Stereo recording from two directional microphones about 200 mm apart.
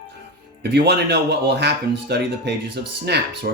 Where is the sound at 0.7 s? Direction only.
55° right (ahead or behind).